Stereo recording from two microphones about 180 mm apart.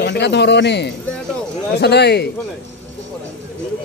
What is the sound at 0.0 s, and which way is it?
A man's voice, 70° left (ahead or behind).